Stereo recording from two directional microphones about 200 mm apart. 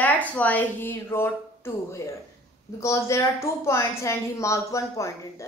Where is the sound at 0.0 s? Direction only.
10° left (ahead or behind).